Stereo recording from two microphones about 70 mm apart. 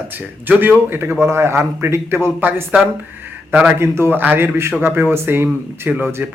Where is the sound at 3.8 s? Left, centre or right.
Right.